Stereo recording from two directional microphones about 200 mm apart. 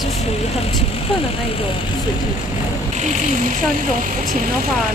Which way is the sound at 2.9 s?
35° right (ahead or behind).